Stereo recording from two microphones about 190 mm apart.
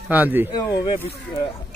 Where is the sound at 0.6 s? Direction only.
20° left (ahead or behind).